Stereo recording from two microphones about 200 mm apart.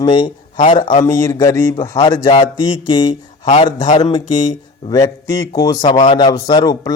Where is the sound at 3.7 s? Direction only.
40° left (ahead or behind).